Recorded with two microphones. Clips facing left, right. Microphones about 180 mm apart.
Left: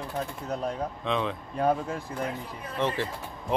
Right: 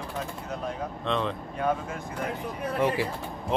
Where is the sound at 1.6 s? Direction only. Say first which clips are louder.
Left 3 dB; 35° left (ahead or behind).